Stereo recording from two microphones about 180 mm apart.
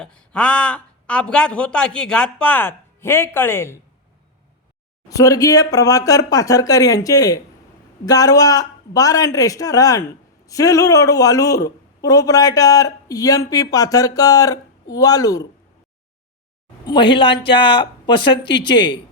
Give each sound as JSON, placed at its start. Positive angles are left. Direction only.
{"t": 0.0, "sound": "speech", "side_deg": 5}
{"t": 5.0, "sound": "a man's voice", "side_deg": 20}
{"t": 16.8, "sound": "a man's voice", "side_deg": 25}